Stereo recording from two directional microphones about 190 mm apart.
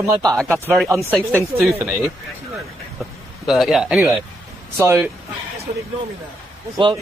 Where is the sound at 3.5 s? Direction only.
Centre (ahead or behind).